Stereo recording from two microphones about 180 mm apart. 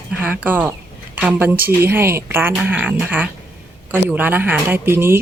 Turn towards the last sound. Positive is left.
turn(degrees=-15)  # may be behind; listen again after turning